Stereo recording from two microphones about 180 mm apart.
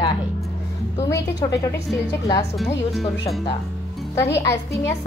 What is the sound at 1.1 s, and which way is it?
Speech, 20° left (ahead or behind).